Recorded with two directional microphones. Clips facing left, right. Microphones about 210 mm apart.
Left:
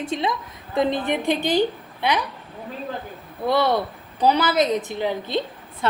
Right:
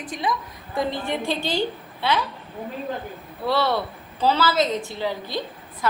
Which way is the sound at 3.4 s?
15° left (ahead or behind).